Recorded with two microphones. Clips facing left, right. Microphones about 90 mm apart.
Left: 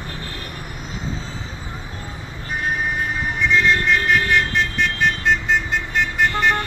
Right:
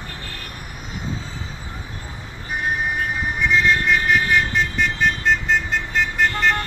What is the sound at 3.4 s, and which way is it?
Vehicle, 5° right (ahead or behind).